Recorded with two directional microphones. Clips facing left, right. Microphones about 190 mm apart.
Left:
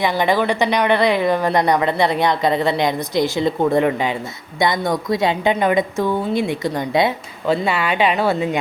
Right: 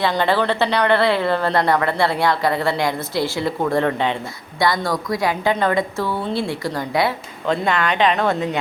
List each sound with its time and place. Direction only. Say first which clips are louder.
0.0 s speech: left 1 dB; 15° left (ahead or behind)
4.6 s a woman's voice: left 1 dB; 20° left (ahead or behind)
7.4 s speech: left 1 dB; 5° left (ahead or behind)